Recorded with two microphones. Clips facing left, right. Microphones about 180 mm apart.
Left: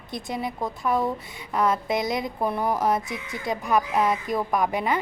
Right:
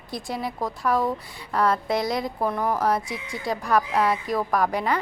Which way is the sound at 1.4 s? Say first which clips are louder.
Even; 20° left (ahead or behind).